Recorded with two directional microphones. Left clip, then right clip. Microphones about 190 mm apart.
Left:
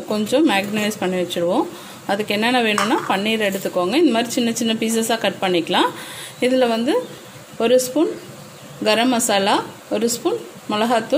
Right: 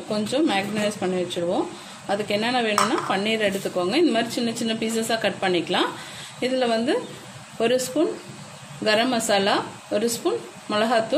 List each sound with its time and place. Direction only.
0.1 s a woman's voice: 40° left (ahead or behind)